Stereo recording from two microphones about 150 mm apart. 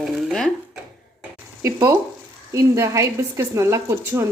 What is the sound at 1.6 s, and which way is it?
A woman's voice, 20° right (ahead or behind).